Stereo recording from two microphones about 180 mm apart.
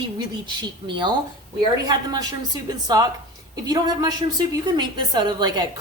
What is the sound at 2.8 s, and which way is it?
A woman's voice, 20° right (ahead or behind).